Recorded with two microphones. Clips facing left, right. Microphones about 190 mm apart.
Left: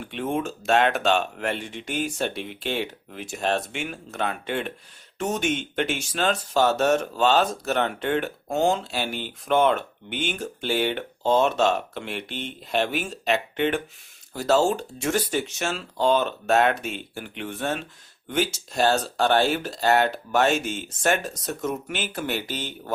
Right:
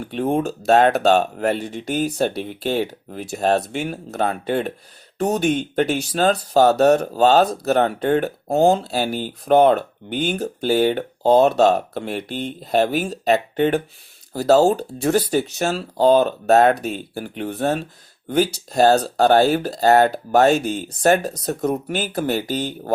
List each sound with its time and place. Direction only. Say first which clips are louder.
0.0 s speech: right 6 dB; 40° right (ahead or behind)